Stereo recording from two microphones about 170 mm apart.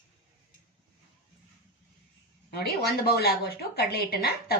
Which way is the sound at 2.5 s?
70° left (ahead or behind).